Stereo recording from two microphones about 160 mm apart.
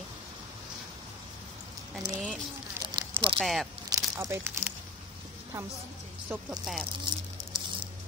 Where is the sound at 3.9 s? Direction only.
20° right (ahead or behind).